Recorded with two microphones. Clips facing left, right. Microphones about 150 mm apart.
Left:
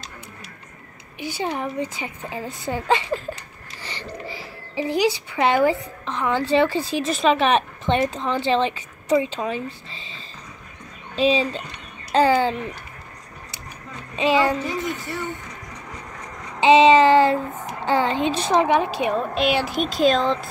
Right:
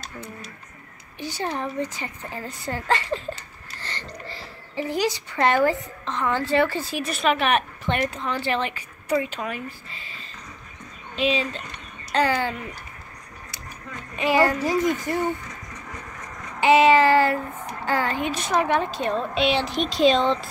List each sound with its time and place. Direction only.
1.2 s a woman's voice: 10° left (ahead or behind)
3.8 s a sound: 10° left (ahead or behind)
4.7 s a woman's voice: 15° left (ahead or behind)
14.1 s a woman's voice: 20° left (ahead or behind)
14.6 s speech: 40° right (ahead or behind)
16.5 s a woman's voice: 20° left (ahead or behind); by 20.4 s centre (ahead or behind)